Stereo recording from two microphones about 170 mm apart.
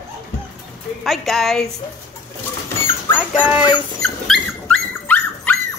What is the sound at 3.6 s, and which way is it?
Dog, 25° left (ahead or behind).